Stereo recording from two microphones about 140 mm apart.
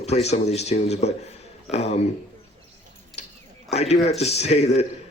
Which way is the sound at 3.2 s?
50° left (ahead or behind).